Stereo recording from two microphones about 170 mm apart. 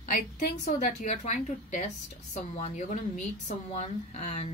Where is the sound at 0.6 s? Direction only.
45° left (ahead or behind).